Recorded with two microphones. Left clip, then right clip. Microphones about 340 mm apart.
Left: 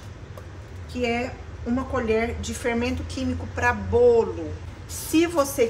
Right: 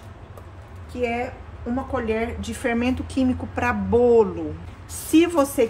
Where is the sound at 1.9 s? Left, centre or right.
Centre.